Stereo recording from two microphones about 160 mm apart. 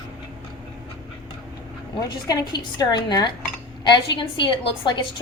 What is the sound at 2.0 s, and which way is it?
A woman's voice, 25° left (ahead or behind).